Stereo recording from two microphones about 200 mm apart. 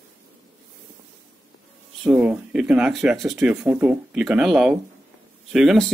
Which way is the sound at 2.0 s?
5° right (ahead or behind).